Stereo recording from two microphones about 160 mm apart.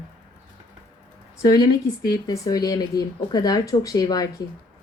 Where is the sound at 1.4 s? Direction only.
25° left (ahead or behind).